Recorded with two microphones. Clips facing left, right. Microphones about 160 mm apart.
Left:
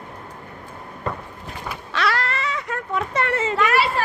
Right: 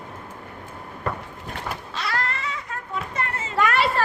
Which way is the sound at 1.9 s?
80° left.